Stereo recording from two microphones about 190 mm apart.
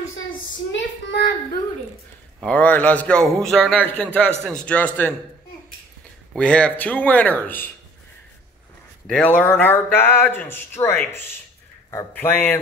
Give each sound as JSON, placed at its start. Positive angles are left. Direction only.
{"t": 0.7, "sound": "child singing", "side_deg": 60}
{"t": 2.4, "sound": "a man's voice", "side_deg": 10}
{"t": 6.3, "sound": "a man's voice", "side_deg": 5}
{"t": 9.0, "sound": "a man's voice", "side_deg": 5}
{"t": 12.1, "sound": "a man's voice", "side_deg": 10}